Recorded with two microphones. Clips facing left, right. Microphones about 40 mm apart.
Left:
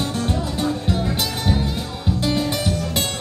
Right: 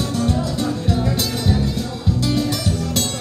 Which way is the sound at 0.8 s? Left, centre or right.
Left.